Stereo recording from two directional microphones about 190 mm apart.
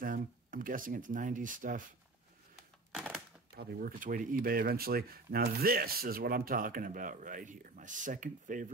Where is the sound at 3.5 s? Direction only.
45° right (ahead or behind).